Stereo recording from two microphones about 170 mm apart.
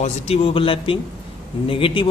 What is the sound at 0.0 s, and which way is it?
A man's voice, 35° left (ahead or behind).